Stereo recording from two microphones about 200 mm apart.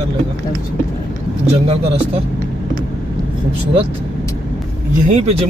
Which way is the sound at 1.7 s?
30° right (ahead or behind).